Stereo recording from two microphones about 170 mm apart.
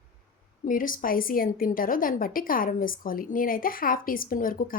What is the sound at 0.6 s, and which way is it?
A woman's voice, 55° left (ahead or behind).